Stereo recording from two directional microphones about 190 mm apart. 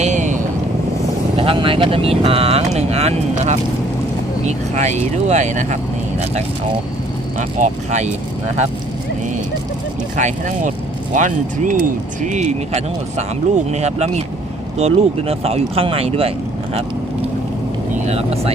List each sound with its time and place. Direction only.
0.0 s vehicle: 40° right (ahead or behind)
1.4 s speech: 30° right (ahead or behind)
7.3 s speech: 40° right (ahead or behind)
10.2 s speech: 40° right (ahead or behind)
17.9 s speech: 35° right (ahead or behind)